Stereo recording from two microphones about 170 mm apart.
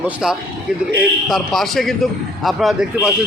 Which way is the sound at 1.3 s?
Centre (ahead or behind).